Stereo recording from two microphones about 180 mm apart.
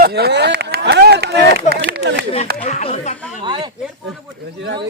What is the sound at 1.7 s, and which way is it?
Speech, 70° right (ahead or behind).